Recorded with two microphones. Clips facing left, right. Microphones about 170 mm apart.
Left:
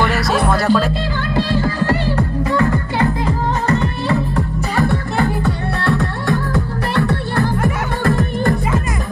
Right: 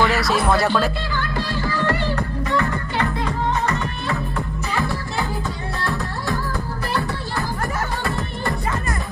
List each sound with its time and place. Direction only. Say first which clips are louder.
0.1 s music: left 2 dB; centre (ahead or behind)
4.7 s music: left 7 dB; 55° left (ahead or behind)